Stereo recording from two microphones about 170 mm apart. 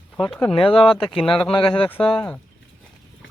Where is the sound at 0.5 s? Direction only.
30° left (ahead or behind).